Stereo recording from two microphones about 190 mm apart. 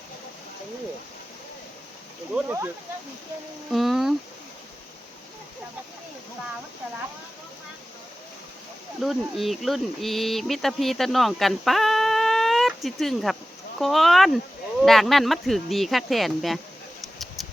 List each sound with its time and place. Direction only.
2.3 s speech: 10° right (ahead or behind)
3.7 s speech: centre (ahead or behind)
9.0 s speech: centre (ahead or behind)